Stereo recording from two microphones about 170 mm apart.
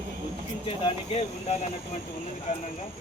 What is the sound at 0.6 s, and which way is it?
Speech, 35° left (ahead or behind).